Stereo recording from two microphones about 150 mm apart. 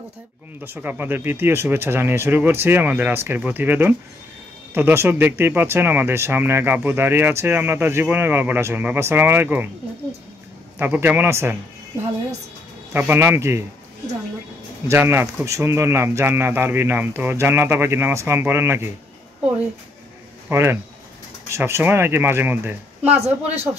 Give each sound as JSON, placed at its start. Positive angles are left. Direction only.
{"t": 0.7, "sound": "speech", "side_deg": -10}
{"t": 10.8, "sound": "speech", "side_deg": -15}
{"t": 12.9, "sound": "speech", "side_deg": -15}
{"t": 14.9, "sound": "speech", "side_deg": -15}
{"t": 20.4, "sound": "speech", "side_deg": -15}
{"t": 23.1, "sound": "a man's voice", "side_deg": -45}